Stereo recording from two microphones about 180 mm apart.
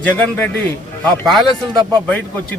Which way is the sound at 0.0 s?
10° left (ahead or behind).